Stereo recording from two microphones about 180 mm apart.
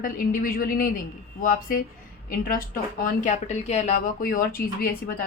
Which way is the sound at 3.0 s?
40° left (ahead or behind).